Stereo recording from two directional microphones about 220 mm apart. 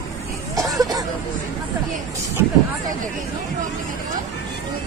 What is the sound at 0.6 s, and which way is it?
Hubbub, 15° right (ahead or behind).